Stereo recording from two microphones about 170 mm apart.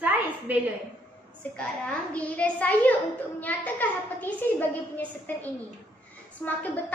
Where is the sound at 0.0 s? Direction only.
10° right (ahead or behind).